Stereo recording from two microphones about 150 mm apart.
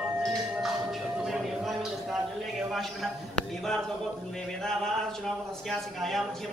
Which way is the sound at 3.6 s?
5° left (ahead or behind).